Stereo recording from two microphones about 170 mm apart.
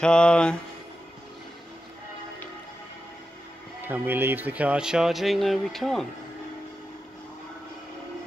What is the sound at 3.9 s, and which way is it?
Speech, 10° right (ahead or behind).